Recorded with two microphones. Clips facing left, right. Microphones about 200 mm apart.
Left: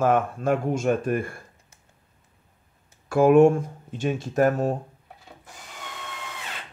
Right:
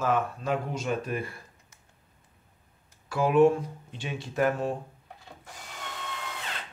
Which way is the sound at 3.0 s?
50° left (ahead or behind).